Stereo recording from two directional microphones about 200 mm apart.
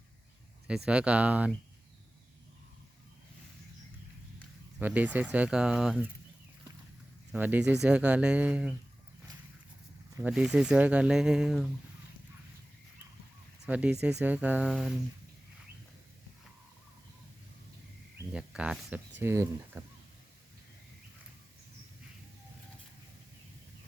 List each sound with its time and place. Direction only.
0.9 s speech: 5° right (ahead or behind)
4.8 s speech: 5° right (ahead or behind)
7.3 s speech: 10° right (ahead or behind)
10.2 s speech: 5° right (ahead or behind)
13.7 s speech: 5° right (ahead or behind)
18.3 s speech: 5° right (ahead or behind)